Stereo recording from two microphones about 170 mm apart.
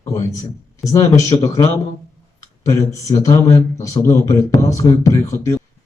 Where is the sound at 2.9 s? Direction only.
20° left (ahead or behind).